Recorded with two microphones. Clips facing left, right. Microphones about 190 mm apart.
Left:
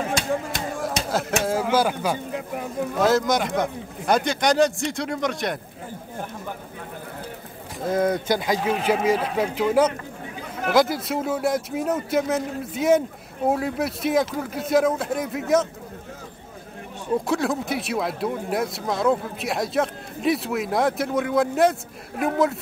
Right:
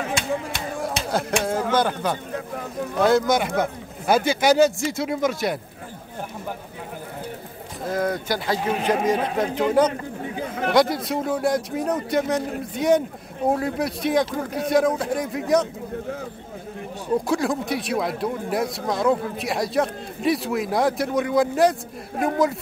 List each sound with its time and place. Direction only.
1.1 s speech: 5° left (ahead or behind)
7.9 s speech: 20° left (ahead or behind)
8.6 s speech: 10° left (ahead or behind)
17.3 s speech: centre (ahead or behind)